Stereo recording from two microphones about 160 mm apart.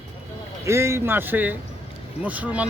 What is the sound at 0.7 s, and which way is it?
Speech, 15° right (ahead or behind).